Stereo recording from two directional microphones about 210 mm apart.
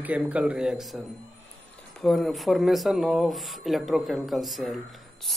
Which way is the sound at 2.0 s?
Centre (ahead or behind).